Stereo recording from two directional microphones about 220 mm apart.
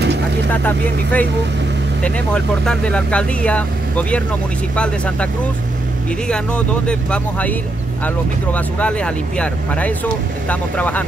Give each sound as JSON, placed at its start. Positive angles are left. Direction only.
{"t": 0.0, "sound": "vehicle", "side_deg": -50}
{"t": 0.5, "sound": "speech", "side_deg": 10}
{"t": 8.5, "sound": "speech", "side_deg": 5}